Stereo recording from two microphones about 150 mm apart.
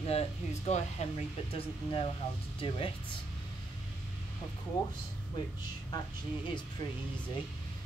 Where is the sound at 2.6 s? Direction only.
40° left (ahead or behind).